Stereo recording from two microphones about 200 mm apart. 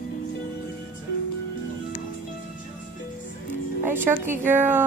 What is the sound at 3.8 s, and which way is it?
A woman's voice, 10° right (ahead or behind).